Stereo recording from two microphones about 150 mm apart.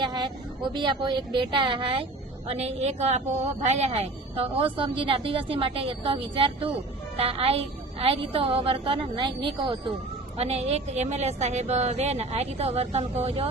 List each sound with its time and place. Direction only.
0.0 s a woman's voice: 30° right (ahead or behind)